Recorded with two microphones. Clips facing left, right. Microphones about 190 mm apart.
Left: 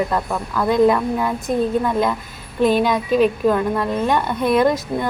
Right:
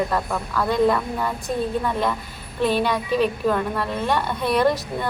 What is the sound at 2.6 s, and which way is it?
A woman's voice, 15° left (ahead or behind).